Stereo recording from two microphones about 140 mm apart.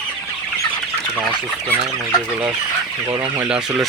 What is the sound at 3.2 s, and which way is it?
Speech, 10° right (ahead or behind).